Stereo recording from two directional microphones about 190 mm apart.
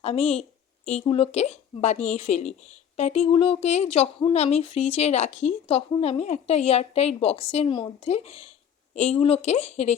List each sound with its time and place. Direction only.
0.0 s a woman's voice: 35° left (ahead or behind)